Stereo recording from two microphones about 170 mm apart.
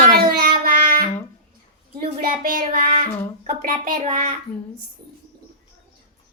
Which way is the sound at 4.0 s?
45° right (ahead or behind).